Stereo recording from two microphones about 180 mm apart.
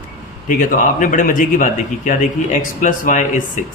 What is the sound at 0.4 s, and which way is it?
Speech, 45° left (ahead or behind).